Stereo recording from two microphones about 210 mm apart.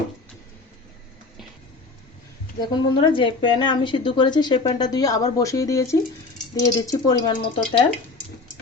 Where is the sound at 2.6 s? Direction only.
20° left (ahead or behind).